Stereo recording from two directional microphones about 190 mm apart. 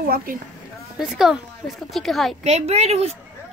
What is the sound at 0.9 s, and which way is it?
A woman's voice, centre (ahead or behind).